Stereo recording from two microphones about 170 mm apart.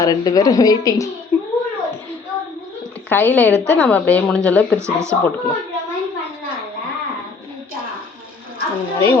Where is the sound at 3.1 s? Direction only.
10° left (ahead or behind).